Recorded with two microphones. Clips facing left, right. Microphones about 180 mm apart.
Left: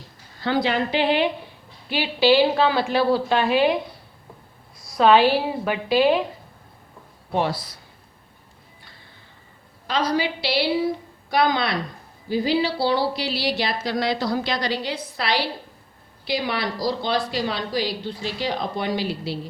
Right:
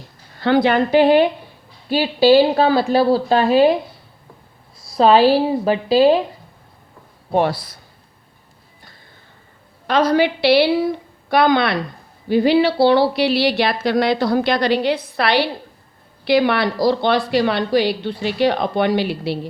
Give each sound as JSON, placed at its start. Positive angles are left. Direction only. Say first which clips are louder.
{"t": 0.3, "sound": "a woman's voice", "louder": "right 7 dB", "side_deg": -65}
{"t": 4.9, "sound": "a woman's voice", "louder": "right 4 dB", "side_deg": -35}
{"t": 7.3, "sound": "speech", "louder": "right 6 dB", "side_deg": -55}
{"t": 9.8, "sound": "speech", "louder": "right 7 dB", "side_deg": -60}